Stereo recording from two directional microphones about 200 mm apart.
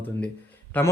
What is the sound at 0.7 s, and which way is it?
Speech, 10° left (ahead or behind).